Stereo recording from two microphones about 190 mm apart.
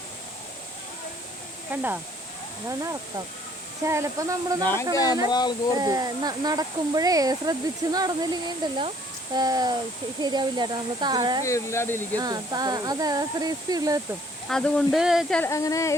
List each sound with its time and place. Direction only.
1.7 s speech: 10° right (ahead or behind)
4.6 s speech: 10° left (ahead or behind)
5.3 s speech: 20° left (ahead or behind)
5.7 s speech: 20° right (ahead or behind)
11.4 s speech: 15° left (ahead or behind)
12.1 s speech: 20° right (ahead or behind)
14.4 s speech: 5° left (ahead or behind)
15.4 s speech: 15° left (ahead or behind)